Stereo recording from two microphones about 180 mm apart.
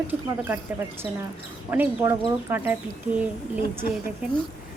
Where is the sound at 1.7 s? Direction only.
10° right (ahead or behind).